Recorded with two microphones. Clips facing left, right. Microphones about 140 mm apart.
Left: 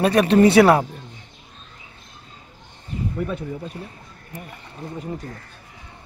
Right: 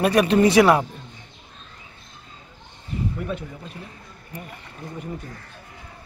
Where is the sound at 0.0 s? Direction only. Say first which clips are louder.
Left 2 dB; 30° left (ahead or behind).